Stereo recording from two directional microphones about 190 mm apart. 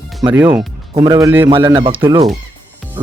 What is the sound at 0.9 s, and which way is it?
Speech, 20° right (ahead or behind).